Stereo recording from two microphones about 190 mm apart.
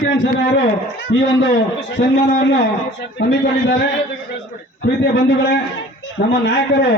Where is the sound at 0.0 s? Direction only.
65° left (ahead or behind).